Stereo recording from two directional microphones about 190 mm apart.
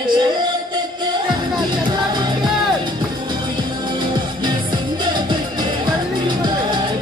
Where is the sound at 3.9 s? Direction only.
25° right (ahead or behind).